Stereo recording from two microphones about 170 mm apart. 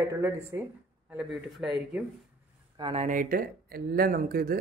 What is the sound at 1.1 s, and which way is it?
Speech, 5° right (ahead or behind).